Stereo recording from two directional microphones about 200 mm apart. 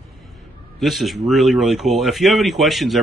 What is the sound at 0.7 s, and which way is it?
A man's voice, centre (ahead or behind).